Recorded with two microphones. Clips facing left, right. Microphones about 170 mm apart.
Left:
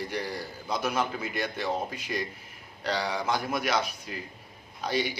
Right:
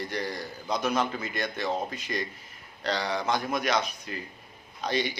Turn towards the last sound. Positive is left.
turn(degrees=10)  # may be behind; listen again after turning